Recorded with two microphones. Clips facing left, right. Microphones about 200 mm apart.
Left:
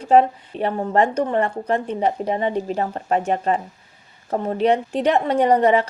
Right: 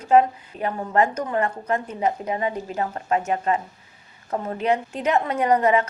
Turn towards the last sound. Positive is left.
turn(degrees=30)  # may be behind; listen again after turning